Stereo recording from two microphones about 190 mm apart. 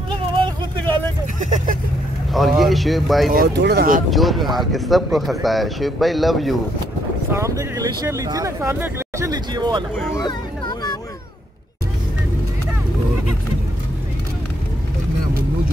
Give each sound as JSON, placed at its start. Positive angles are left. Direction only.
{"t": 1.4, "sound": "speech", "side_deg": -40}
{"t": 2.3, "sound": "speech", "side_deg": 0}
{"t": 3.3, "sound": "speech", "side_deg": -55}
{"t": 4.1, "sound": "speech", "side_deg": 0}
{"t": 7.3, "sound": "speech", "side_deg": -15}
{"t": 9.3, "sound": "speech", "side_deg": -20}
{"t": 10.1, "sound": "a sound", "side_deg": 20}